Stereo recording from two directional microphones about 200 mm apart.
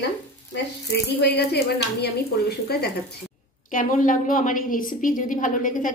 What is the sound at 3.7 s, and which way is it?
A woman's voice, 40° left (ahead or behind).